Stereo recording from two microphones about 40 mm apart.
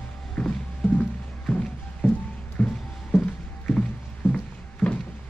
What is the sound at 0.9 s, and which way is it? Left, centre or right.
Music, left.